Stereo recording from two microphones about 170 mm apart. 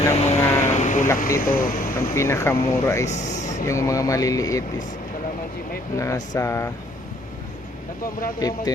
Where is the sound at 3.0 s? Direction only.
45° left (ahead or behind).